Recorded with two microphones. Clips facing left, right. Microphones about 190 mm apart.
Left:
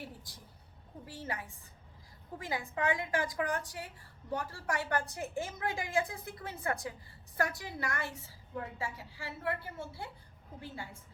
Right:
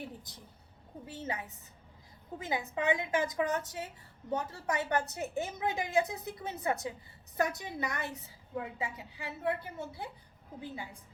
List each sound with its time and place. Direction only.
0.3 s a woman's voice: 20° right (ahead or behind)